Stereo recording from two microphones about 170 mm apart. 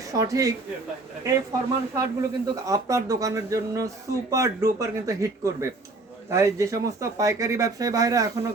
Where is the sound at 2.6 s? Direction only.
20° right (ahead or behind).